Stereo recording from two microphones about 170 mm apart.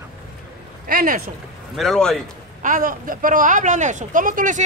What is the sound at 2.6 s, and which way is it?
A man's voice, 50° right (ahead or behind).